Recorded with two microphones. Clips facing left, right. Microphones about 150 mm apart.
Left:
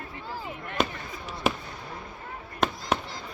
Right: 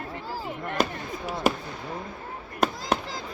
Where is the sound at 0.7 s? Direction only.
40° right (ahead or behind).